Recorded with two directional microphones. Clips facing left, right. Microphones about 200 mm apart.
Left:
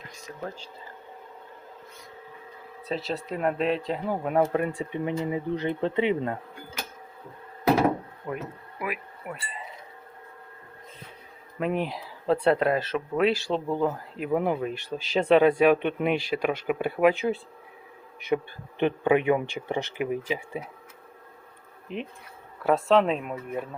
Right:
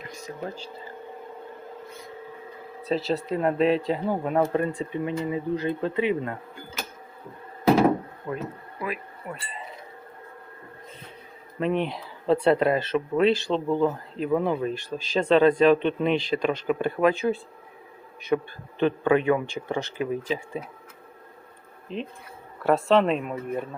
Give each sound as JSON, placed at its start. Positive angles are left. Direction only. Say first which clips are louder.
{"t": 0.4, "sound": "speech", "louder": "right 1 dB", "side_deg": -30}
{"t": 3.1, "sound": "speech", "louder": "right 2 dB", "side_deg": 0}
{"t": 8.8, "sound": "speech", "louder": "right 1 dB", "side_deg": 10}
{"t": 11.6, "sound": "speech", "louder": "right 2 dB", "side_deg": 5}
{"t": 21.9, "sound": "speech", "louder": "right 1 dB", "side_deg": 15}
{"t": 22.6, "sound": "speech", "louder": "right 1 dB", "side_deg": 0}